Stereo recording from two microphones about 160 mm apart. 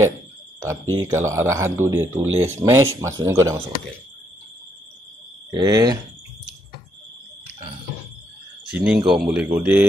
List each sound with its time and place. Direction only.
0.6 s speech: 15° right (ahead or behind)
5.5 s speech: 25° right (ahead or behind)
8.7 s speech: 5° right (ahead or behind)